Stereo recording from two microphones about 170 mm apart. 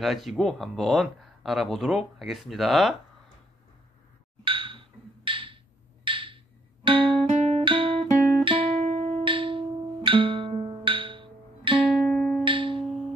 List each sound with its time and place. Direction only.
0.0 s speech: centre (ahead or behind)
4.5 s music: 30° right (ahead or behind)
12.1 s music: 5° left (ahead or behind)
12.4 s music: 30° right (ahead or behind)